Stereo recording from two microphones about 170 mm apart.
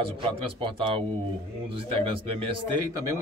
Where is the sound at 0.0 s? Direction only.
30° right (ahead or behind).